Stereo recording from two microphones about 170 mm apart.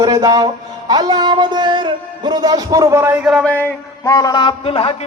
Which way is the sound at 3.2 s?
Centre (ahead or behind).